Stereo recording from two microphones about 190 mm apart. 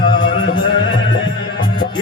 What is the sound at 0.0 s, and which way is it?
Music, 25° left (ahead or behind).